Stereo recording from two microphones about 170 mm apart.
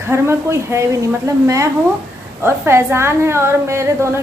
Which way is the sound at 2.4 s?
15° right (ahead or behind).